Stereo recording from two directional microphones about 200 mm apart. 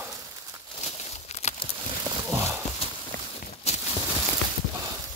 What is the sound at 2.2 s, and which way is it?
Horse, 10° right (ahead or behind).